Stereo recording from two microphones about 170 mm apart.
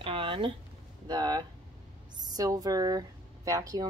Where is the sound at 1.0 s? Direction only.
25° right (ahead or behind).